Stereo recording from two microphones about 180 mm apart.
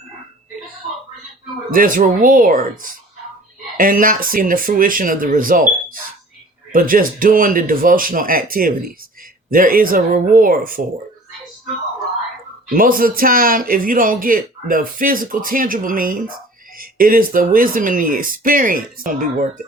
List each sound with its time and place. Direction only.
1.7 s speech: 50° right (ahead or behind)
12.7 s speech: 50° right (ahead or behind)